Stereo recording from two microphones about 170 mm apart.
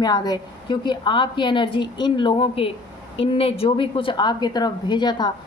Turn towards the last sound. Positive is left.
turn(degrees=25)  # may be behind; listen again after turning